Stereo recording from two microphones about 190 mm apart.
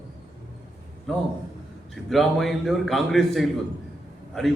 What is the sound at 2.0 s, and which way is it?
A man's voice, centre (ahead or behind).